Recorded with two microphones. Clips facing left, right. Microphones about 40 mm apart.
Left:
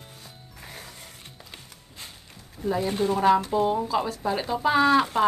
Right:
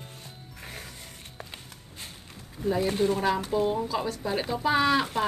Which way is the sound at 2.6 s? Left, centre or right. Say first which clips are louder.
Even; centre.